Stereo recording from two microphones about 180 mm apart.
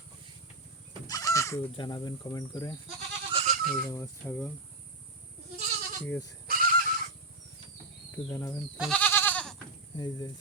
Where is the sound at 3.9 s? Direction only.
15° left (ahead or behind).